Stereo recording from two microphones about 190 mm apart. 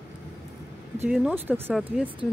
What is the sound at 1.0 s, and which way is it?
Speech, 5° right (ahead or behind).